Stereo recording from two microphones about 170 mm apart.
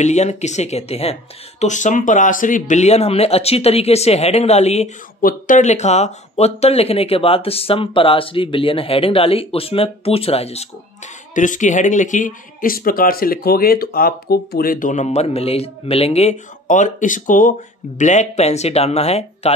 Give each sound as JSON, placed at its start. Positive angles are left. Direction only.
{"t": 0.0, "sound": "speech", "side_deg": 40}
{"t": 11.3, "sound": "speech", "side_deg": 50}